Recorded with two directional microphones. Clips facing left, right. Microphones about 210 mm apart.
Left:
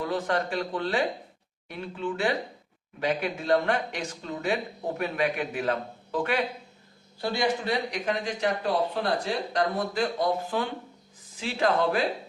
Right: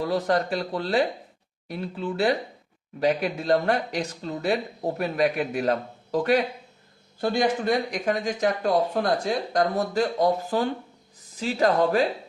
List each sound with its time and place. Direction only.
0.0 s speech: 40° right (ahead or behind)